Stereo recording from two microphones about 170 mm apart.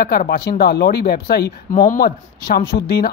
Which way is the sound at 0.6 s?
75° left (ahead or behind).